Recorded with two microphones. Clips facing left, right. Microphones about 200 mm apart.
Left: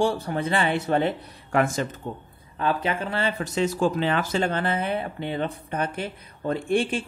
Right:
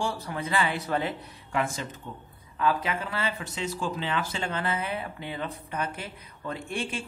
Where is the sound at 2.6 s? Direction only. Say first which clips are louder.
Left 2 dB; 30° left (ahead or behind).